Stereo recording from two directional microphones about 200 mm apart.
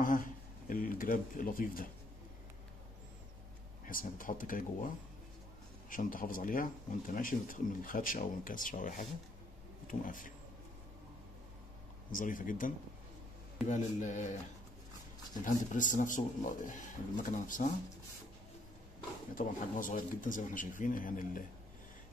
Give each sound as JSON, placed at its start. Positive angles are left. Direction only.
{"t": 0.0, "sound": "speech", "side_deg": 45}
{"t": 3.8, "sound": "speech", "side_deg": 45}
{"t": 12.1, "sound": "speech", "side_deg": 40}
{"t": 15.4, "sound": "speech", "side_deg": 40}
{"t": 19.3, "sound": "speech", "side_deg": 40}